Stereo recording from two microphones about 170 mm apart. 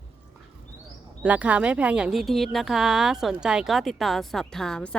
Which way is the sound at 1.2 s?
10° right (ahead or behind).